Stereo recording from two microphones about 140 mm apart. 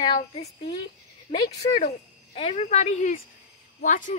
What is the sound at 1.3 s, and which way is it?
Speech, 60° left (ahead or behind).